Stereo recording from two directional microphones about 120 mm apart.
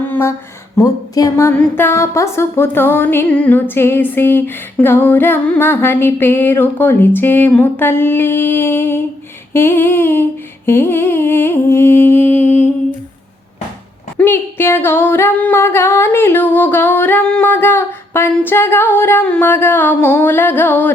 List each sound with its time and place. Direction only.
0.0 s a sound: 20° left (ahead or behind)
0.8 s music: 30° left (ahead or behind)
14.2 s singing: 20° left (ahead or behind)